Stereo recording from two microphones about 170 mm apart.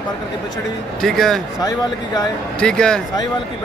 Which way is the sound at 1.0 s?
Centre (ahead or behind).